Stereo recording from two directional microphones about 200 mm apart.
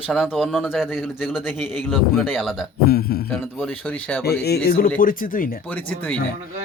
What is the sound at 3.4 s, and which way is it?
Speech, 5° left (ahead or behind).